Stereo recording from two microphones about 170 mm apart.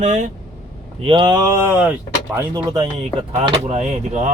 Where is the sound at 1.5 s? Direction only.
15° right (ahead or behind).